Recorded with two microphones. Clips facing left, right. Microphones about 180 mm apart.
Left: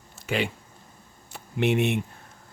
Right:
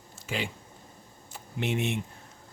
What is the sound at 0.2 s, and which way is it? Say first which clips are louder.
Speech: left 6 dB; 65° left (ahead or behind).